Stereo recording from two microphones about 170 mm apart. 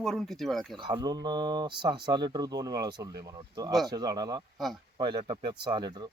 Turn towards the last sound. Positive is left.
turn(degrees=-25)  # may be behind; listen again after turning